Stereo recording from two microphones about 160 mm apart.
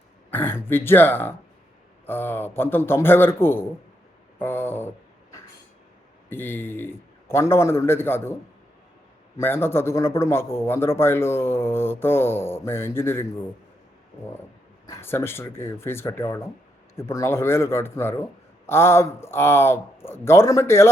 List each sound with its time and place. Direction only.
0.3 s speech: 15° left (ahead or behind)
4.4 s a sound: 15° left (ahead or behind)
6.3 s speech: 15° left (ahead or behind)
9.4 s speech: 15° left (ahead or behind)
14.8 s speech: 15° left (ahead or behind)